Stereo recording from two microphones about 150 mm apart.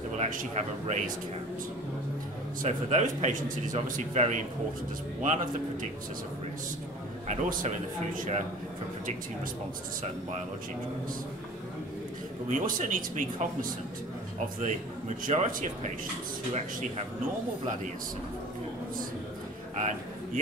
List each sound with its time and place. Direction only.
0.2 s a man's voice: 55° right (ahead or behind)
2.6 s a man's voice: 55° right (ahead or behind)
7.2 s speech: 55° right (ahead or behind)
12.4 s speech: 60° right (ahead or behind)